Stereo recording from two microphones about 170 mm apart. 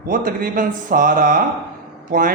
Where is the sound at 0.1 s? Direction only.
55° right (ahead or behind).